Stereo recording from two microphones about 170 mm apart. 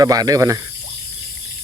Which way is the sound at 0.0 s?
20° right (ahead or behind).